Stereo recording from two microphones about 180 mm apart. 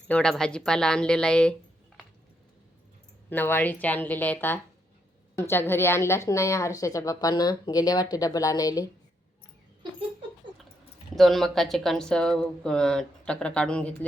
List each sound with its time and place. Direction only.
0.1 s speech: 5° left (ahead or behind)
3.2 s a woman's voice: 10° left (ahead or behind)
11.1 s speech: centre (ahead or behind)